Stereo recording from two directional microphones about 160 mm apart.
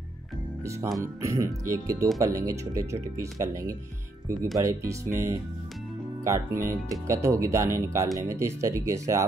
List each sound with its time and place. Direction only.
1.0 s speech: 20° right (ahead or behind)